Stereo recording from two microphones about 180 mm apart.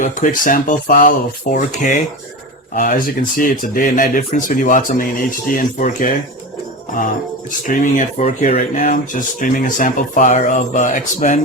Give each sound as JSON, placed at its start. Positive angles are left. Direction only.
{"t": 0.0, "sound": "speech", "side_deg": 45}
{"t": 7.6, "sound": "speech", "side_deg": 45}